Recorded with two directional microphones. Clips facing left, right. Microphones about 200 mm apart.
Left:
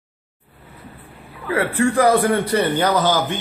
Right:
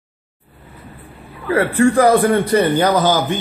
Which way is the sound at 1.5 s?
45° right (ahead or behind).